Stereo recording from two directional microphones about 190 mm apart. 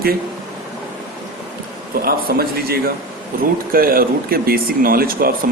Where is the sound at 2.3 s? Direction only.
55° right (ahead or behind).